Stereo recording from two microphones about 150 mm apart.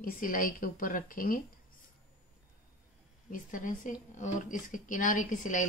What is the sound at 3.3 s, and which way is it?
A woman's voice, 60° left (ahead or behind).